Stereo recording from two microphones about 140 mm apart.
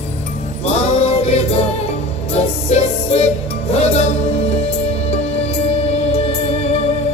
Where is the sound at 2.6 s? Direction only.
45° left (ahead or behind).